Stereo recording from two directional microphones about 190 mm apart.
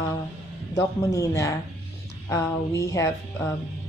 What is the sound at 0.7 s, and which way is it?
Speech, 15° left (ahead or behind).